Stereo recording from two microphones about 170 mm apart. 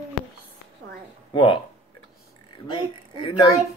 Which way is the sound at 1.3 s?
30° left (ahead or behind).